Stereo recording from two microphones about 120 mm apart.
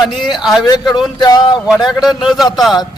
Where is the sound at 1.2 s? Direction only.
35° left (ahead or behind).